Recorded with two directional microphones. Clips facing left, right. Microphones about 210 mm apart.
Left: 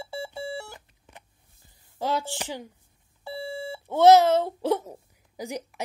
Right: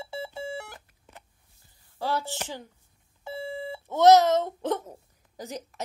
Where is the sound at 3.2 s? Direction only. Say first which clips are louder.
Left 1 dB; 20° right (ahead or behind).